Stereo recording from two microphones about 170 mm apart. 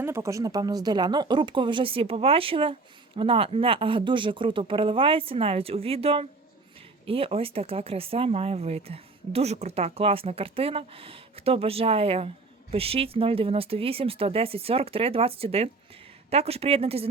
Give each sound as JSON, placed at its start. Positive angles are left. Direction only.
{"t": 0.0, "sound": "speech", "side_deg": -15}